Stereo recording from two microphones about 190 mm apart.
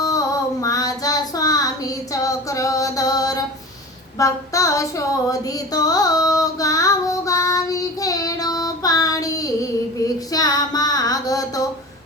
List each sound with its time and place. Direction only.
0.6 s child singing: 20° left (ahead or behind)
4.2 s a sound: 15° left (ahead or behind)
10.3 s female singing: 20° left (ahead or behind)